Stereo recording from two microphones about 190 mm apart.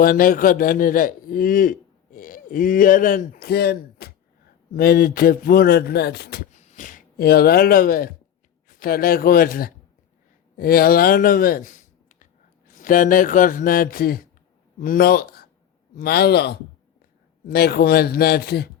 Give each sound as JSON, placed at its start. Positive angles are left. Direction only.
{"t": 0.0, "sound": "a man's voice", "side_deg": 50}
{"t": 6.5, "sound": "a man's voice", "side_deg": 40}